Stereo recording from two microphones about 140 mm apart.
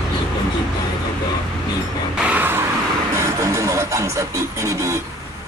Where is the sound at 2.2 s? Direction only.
15° right (ahead or behind).